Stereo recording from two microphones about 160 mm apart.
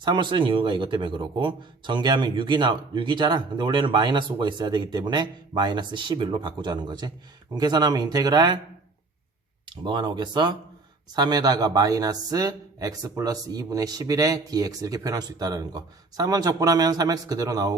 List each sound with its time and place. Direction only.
0.0 s speech: 30° right (ahead or behind)
9.6 s speech: 25° right (ahead or behind)